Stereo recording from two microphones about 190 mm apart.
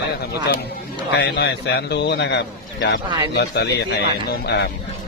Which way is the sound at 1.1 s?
60° left (ahead or behind).